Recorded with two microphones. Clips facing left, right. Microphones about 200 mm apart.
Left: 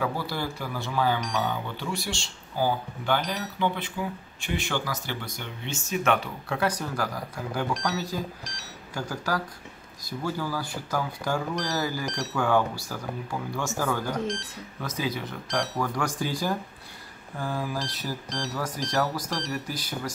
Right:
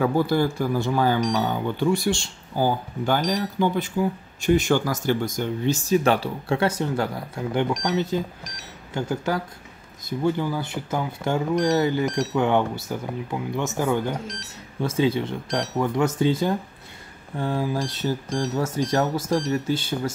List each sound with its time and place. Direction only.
0.0 s speech: 50° right (ahead or behind); by 20.1 s 25° right (ahead or behind)